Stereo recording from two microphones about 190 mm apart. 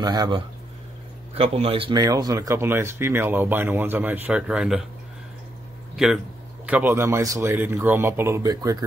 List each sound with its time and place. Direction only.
0.0 s speech: 20° right (ahead or behind)
1.3 s speech: 30° right (ahead or behind); by 4.8 s 5° right (ahead or behind)
6.0 s speech: centre (ahead or behind)